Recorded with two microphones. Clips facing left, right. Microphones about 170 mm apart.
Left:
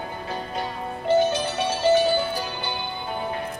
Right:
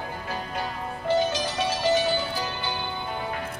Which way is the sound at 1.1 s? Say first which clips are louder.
Left 4 dB; 60° left (ahead or behind).